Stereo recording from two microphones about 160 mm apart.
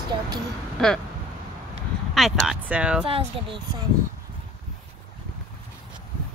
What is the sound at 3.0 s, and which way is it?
Speech, 35° right (ahead or behind).